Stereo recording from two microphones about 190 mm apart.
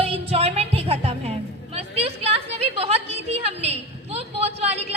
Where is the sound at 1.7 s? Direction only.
30° right (ahead or behind).